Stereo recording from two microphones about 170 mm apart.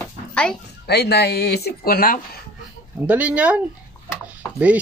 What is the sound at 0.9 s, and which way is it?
Speech, 75° left (ahead or behind).